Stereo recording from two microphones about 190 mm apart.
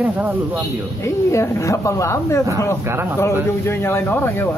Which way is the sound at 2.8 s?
15° right (ahead or behind).